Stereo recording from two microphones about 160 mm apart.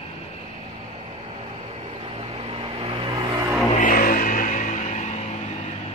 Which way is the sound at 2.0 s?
35° right (ahead or behind).